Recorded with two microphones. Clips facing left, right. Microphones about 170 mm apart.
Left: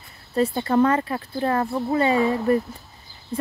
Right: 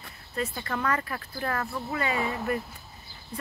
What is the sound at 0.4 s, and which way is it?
Speech, 30° left (ahead or behind).